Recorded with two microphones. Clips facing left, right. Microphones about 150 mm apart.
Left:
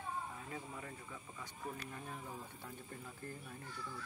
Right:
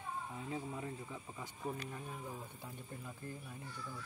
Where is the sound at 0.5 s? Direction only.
20° right (ahead or behind).